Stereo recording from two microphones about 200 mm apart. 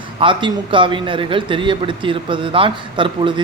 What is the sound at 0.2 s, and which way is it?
A man's voice, 25° right (ahead or behind).